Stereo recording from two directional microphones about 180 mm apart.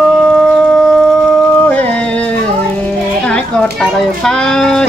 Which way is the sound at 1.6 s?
10° left (ahead or behind).